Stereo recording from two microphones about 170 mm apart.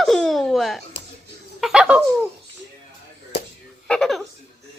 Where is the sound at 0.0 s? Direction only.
Centre (ahead or behind).